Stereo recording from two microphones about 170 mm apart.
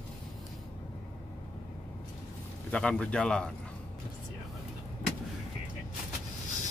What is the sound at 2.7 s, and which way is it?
Speech, 5° left (ahead or behind).